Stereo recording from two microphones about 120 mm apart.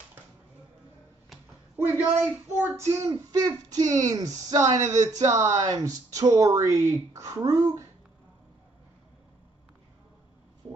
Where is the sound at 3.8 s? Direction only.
90° right.